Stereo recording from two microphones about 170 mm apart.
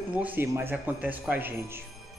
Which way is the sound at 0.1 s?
10° right (ahead or behind).